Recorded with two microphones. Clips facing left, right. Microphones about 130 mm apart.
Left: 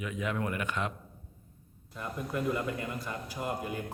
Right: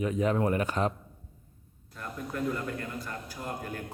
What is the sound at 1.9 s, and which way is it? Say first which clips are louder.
A man's voice: left 2 dB; 10° left (ahead or behind).